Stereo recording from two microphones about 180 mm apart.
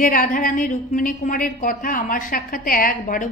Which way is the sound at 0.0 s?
50° left (ahead or behind).